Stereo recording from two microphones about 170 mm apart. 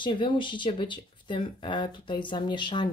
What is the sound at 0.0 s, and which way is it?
Speech, 30° left (ahead or behind).